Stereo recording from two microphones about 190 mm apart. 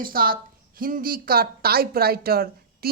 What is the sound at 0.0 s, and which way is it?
A woman's voice, 50° right (ahead or behind).